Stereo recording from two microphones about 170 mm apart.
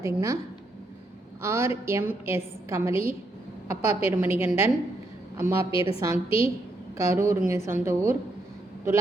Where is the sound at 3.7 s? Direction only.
40° left (ahead or behind).